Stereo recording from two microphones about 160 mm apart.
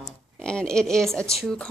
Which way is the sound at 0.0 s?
5° left (ahead or behind).